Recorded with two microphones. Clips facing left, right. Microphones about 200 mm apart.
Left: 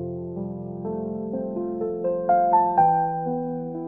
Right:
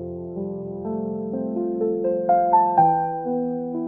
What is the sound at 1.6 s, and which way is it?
Music, 15° right (ahead or behind).